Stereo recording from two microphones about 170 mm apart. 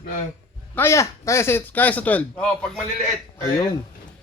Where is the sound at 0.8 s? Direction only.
15° left (ahead or behind).